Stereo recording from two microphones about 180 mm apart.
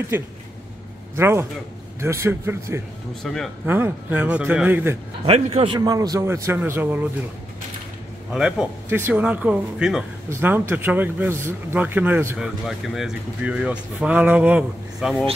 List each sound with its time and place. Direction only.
0.1 s a man's voice: 10° right (ahead or behind)
3.3 s a man's voice: 5° left (ahead or behind)
3.6 s speech: 10° right (ahead or behind)
5.2 s speech: 30° right (ahead or behind); by 7.1 s 10° right (ahead or behind)
8.3 s a man's voice: 5° right (ahead or behind)
12.4 s speech: centre (ahead or behind)